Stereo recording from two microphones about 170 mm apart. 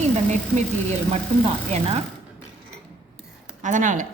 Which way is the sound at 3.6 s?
45° right (ahead or behind).